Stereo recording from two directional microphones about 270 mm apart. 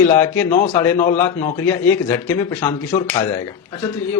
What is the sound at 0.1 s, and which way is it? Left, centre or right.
Speech, centre.